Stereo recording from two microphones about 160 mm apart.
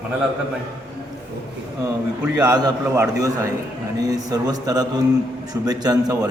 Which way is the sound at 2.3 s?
25° right (ahead or behind).